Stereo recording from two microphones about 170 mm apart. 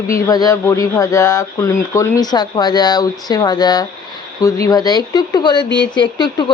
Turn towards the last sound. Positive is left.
turn(degrees=25)  # may be behind; listen again after turning